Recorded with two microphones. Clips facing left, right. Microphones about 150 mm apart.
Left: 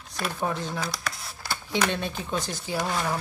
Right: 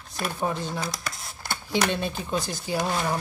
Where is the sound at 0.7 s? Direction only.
20° right (ahead or behind).